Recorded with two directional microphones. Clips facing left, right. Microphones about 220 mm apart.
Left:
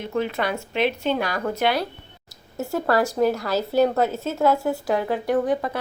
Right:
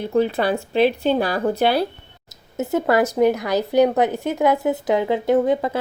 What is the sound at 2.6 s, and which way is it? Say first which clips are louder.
A woman's voice: right 3 dB; 20° right (ahead or behind).